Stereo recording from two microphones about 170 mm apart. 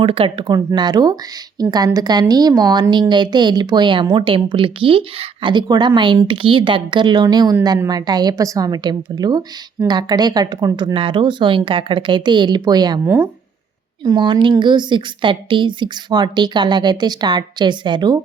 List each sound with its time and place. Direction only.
0.0 s a woman's voice: 30° right (ahead or behind)
13.1 s a woman's voice: 15° right (ahead or behind)